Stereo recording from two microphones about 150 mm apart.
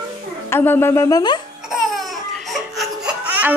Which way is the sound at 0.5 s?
15° left (ahead or behind).